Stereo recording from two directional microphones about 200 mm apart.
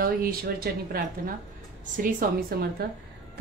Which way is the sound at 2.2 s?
45° right (ahead or behind).